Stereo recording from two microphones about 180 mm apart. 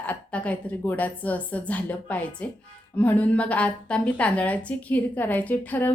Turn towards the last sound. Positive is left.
turn(degrees=10)  # may be behind; listen again after turning